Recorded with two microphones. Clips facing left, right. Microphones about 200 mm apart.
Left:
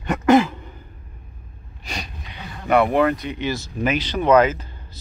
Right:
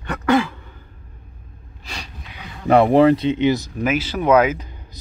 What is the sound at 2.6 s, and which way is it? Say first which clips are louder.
Speech: right 5 dB; 30° right (ahead or behind).